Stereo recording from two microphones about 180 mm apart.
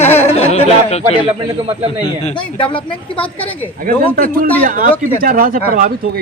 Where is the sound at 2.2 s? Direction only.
30° left (ahead or behind).